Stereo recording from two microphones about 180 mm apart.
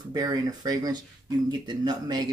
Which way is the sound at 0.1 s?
20° right (ahead or behind).